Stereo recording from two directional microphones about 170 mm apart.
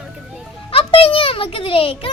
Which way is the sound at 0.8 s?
30° left (ahead or behind).